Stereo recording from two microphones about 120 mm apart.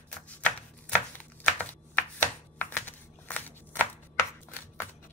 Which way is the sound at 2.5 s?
15° left (ahead or behind).